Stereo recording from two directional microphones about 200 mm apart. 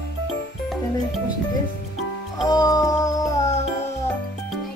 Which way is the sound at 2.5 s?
20° left (ahead or behind).